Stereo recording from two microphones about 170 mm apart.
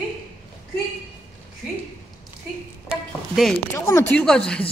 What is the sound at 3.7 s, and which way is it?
Speech, 15° left (ahead or behind).